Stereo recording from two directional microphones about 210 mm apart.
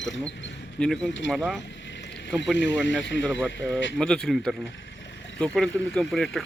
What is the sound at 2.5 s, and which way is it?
Speech, 60° left (ahead or behind).